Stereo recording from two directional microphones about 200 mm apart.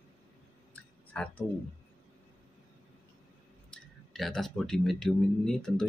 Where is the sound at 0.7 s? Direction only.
5° left (ahead or behind).